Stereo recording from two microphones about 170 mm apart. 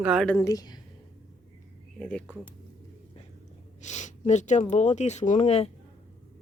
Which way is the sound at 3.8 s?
45° left (ahead or behind).